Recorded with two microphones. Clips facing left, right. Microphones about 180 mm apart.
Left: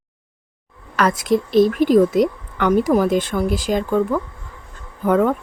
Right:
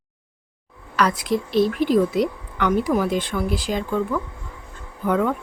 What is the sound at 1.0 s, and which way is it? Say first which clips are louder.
A woman's voice: left 3 dB; 45° left (ahead or behind).